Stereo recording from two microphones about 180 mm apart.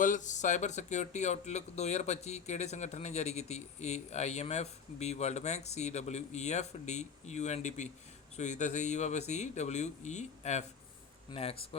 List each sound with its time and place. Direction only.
0.0 s speech: 45° left (ahead or behind)